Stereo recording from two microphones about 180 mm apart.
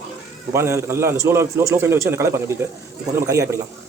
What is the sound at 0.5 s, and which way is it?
A man's voice, 15° right (ahead or behind).